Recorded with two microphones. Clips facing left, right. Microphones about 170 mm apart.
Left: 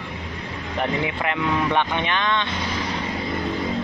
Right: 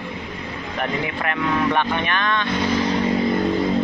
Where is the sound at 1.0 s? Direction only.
20° left (ahead or behind).